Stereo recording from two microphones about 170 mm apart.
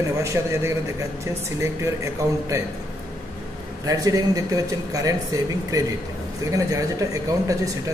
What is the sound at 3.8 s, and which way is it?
Speech, 20° right (ahead or behind).